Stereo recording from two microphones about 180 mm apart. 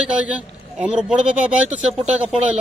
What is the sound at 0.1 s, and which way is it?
A man's voice, 5° right (ahead or behind).